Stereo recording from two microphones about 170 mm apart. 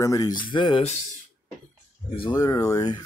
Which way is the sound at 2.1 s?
25° left (ahead or behind).